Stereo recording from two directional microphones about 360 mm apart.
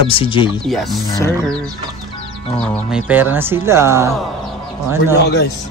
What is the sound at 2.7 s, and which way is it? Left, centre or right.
Speech, centre.